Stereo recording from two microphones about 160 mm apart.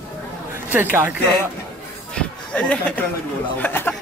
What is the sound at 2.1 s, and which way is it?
Speech, 5° left (ahead or behind).